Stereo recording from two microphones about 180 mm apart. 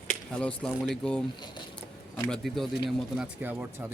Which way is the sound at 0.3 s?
5° left (ahead or behind).